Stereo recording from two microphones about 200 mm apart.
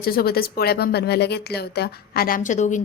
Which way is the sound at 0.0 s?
50° left (ahead or behind).